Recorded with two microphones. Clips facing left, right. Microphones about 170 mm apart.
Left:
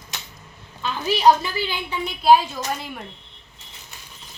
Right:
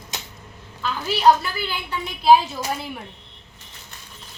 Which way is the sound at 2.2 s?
5° right (ahead or behind).